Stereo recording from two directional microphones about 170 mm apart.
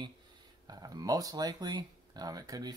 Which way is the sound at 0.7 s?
20° right (ahead or behind).